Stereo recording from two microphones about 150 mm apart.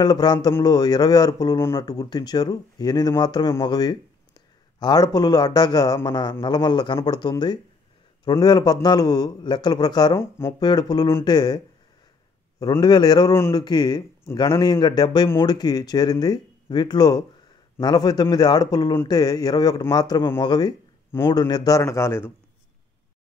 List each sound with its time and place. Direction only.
0.0 s a man's voice: 25° left (ahead or behind)